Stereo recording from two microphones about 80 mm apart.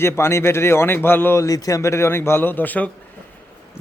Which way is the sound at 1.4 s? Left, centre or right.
Left.